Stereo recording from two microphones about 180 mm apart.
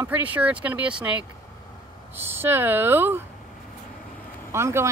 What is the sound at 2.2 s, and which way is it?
Speech, 10° right (ahead or behind).